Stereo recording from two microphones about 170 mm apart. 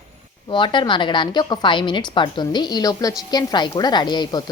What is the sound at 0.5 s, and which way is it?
Speech, 30° left (ahead or behind).